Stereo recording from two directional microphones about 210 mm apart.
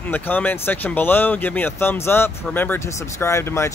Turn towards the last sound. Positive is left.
turn(degrees=10)  # may be behind; listen again after turning